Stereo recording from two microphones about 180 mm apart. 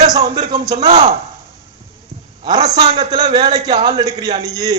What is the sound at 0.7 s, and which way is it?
Speech, 35° right (ahead or behind).